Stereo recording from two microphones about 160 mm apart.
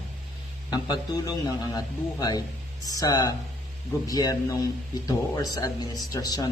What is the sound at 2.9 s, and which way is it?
A man's voice, 20° left (ahead or behind).